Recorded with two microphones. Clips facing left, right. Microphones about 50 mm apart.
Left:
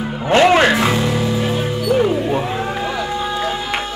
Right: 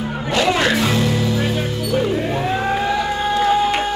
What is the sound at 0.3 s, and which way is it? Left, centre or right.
Music, left.